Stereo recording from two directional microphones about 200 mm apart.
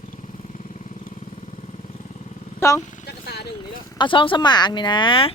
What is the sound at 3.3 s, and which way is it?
Speech, 55° left (ahead or behind).